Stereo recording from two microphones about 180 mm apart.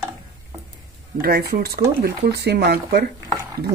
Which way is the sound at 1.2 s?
55° right (ahead or behind).